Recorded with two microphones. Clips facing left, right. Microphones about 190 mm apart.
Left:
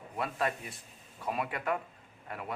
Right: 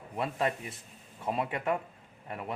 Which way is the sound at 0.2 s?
25° right (ahead or behind).